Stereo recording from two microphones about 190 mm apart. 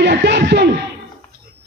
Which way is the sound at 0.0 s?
60° right (ahead or behind).